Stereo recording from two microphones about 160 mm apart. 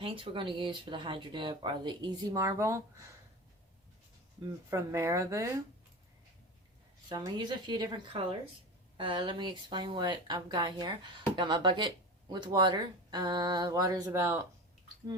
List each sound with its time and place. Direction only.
0.0 s speech: 35° right (ahead or behind); by 3.1 s 20° right (ahead or behind)
4.7 s speech: 15° right (ahead or behind)
7.1 s speech: 25° right (ahead or behind)